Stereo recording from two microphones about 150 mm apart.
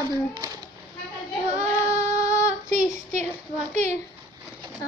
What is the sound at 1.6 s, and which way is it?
Child singing, 20° left (ahead or behind).